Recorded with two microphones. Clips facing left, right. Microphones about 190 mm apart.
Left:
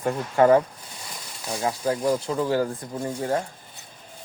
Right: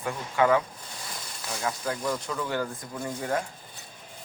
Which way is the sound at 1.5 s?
30° left (ahead or behind).